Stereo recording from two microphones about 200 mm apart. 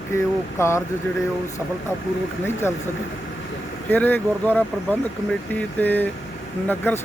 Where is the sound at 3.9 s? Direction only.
10° left (ahead or behind).